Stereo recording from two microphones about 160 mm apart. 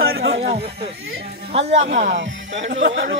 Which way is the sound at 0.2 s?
85° right.